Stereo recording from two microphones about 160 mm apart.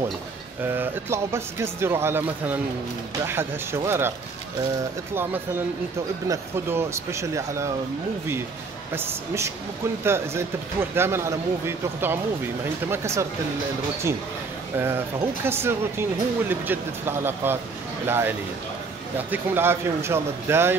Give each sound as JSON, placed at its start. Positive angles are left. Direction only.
{"t": 0.7, "sound": "speech", "side_deg": -15}
{"t": 5.1, "sound": "speech", "side_deg": -15}
{"t": 8.9, "sound": "speech", "side_deg": -15}
{"t": 14.8, "sound": "speech", "side_deg": -15}
{"t": 19.3, "sound": "speech", "side_deg": -15}